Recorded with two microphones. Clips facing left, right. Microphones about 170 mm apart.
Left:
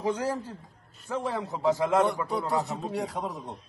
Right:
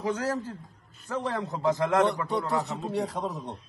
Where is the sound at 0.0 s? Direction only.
15° left (ahead or behind).